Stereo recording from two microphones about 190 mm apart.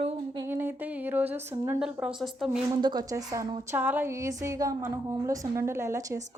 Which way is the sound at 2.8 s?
20° right (ahead or behind).